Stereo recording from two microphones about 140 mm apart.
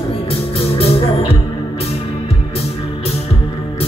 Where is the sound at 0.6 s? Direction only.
40° left (ahead or behind).